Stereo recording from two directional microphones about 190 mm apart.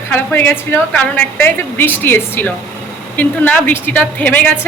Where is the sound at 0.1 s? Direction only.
10° left (ahead or behind).